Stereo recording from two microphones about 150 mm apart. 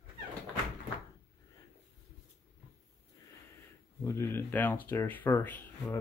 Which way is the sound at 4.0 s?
20° left (ahead or behind).